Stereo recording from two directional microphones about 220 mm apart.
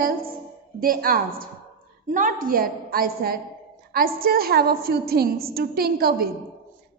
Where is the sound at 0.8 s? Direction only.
40° right (ahead or behind).